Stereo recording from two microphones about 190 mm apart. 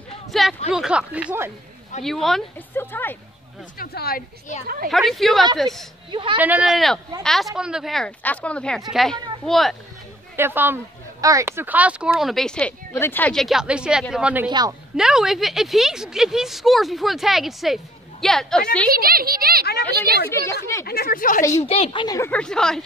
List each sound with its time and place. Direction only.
0.3 s a sound: centre (ahead or behind)
0.7 s speech: 5° right (ahead or behind)
2.0 s speech: centre (ahead or behind)
3.7 s speech: 50° left (ahead or behind)
4.8 s speech: centre (ahead or behind)
10.3 s speech: 10° right (ahead or behind)
14.5 s a woman's voice: 20° right (ahead or behind)
15.0 s speech: 5° right (ahead or behind)
18.9 s speech: 50° right (ahead or behind)
20.2 s speech: 15° left (ahead or behind)
20.8 s speech: 50° left (ahead or behind)
21.5 s a woman's voice: 35° left (ahead or behind)
22.0 s speech: 15° left (ahead or behind)
22.3 s speech: 5° left (ahead or behind)